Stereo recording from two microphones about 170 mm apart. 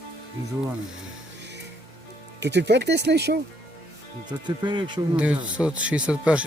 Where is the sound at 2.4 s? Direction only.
90° right.